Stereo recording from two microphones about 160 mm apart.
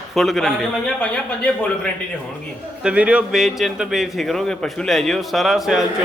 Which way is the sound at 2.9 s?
5° right (ahead or behind).